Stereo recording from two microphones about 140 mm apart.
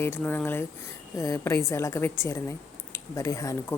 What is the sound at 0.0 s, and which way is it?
A woman's voice, 15° left (ahead or behind).